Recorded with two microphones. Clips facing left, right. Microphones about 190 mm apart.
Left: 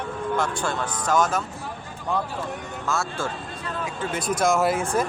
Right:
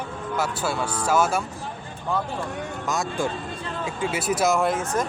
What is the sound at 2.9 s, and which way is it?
Speech, 15° right (ahead or behind).